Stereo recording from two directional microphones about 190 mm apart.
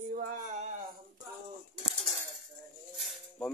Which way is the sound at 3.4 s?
Centre (ahead or behind).